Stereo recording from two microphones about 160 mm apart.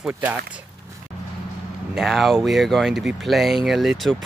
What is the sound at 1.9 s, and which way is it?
Speech, centre (ahead or behind).